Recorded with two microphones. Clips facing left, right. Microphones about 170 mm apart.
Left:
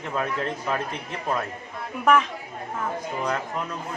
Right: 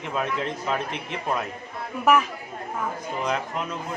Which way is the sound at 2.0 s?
5° right (ahead or behind).